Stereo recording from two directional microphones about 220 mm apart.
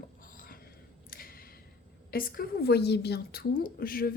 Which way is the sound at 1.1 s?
40° left (ahead or behind).